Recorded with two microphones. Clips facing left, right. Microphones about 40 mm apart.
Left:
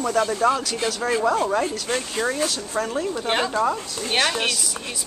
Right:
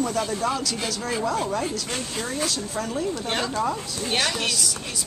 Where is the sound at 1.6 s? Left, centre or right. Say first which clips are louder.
Left 4 dB; centre.